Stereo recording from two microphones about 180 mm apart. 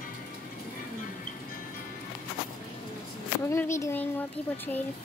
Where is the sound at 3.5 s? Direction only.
15° left (ahead or behind).